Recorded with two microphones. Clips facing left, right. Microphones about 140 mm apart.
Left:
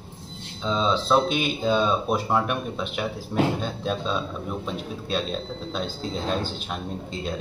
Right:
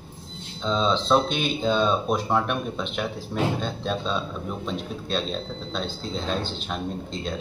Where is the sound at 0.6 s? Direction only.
5° left (ahead or behind).